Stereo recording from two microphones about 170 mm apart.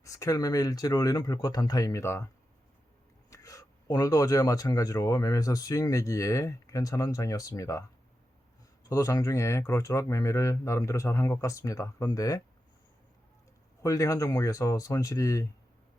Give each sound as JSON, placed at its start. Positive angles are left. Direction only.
{"t": 0.0, "sound": "speech", "side_deg": 20}
{"t": 13.8, "sound": "speech", "side_deg": 20}